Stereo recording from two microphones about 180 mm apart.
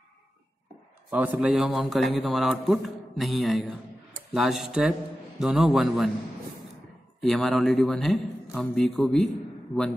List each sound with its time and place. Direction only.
1.1 s a man's voice: 10° right (ahead or behind)
7.2 s a man's voice: centre (ahead or behind)